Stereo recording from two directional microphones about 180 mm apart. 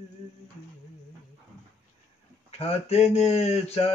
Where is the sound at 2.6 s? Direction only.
35° left (ahead or behind).